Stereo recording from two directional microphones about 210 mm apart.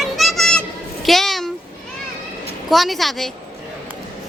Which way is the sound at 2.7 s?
Centre (ahead or behind).